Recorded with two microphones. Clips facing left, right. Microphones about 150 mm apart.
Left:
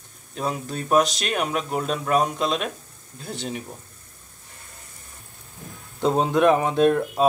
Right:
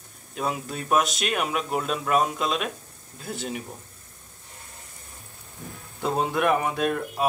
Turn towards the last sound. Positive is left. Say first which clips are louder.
# left 7 dB
turn(degrees=25)  # may be behind; listen again after turning